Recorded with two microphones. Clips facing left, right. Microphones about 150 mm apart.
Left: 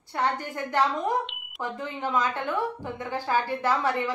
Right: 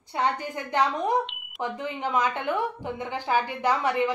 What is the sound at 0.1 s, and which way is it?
A woman's voice, 15° right (ahead or behind).